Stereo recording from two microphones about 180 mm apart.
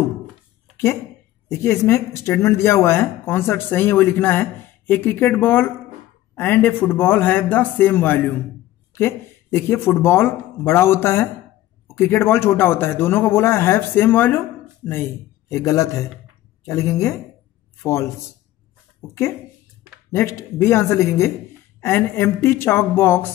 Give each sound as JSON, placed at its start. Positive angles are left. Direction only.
{"t": 1.6, "sound": "speech", "side_deg": 15}
{"t": 15.5, "sound": "speech", "side_deg": 15}